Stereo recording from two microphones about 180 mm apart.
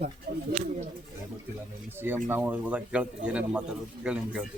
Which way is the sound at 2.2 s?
10° right (ahead or behind).